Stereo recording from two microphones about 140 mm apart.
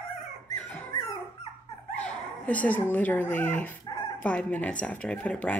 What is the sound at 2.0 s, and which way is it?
Speech, 10° left (ahead or behind).